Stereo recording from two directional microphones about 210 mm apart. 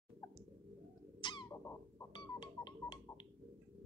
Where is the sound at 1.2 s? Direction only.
20° left (ahead or behind).